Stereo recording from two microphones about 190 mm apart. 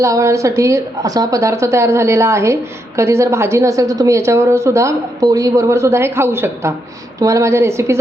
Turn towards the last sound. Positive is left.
turn(degrees=-15)  # may be behind; listen again after turning